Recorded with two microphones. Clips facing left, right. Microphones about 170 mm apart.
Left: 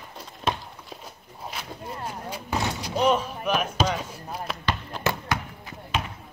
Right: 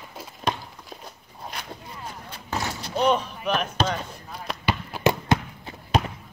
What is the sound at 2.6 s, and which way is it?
Slam, 20° left (ahead or behind).